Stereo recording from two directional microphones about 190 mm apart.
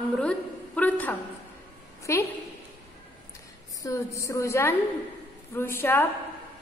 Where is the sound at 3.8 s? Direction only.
15° left (ahead or behind).